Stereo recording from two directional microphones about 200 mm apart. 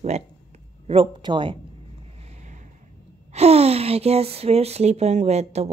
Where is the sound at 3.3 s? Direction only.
30° right (ahead or behind).